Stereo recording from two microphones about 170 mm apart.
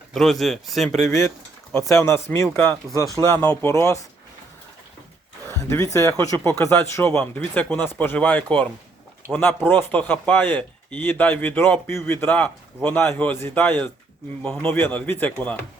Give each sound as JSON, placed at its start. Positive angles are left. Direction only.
{"t": 0.1, "sound": "speech", "side_deg": 0}
{"t": 1.0, "sound": "speech", "side_deg": 20}
{"t": 5.5, "sound": "speech", "side_deg": 15}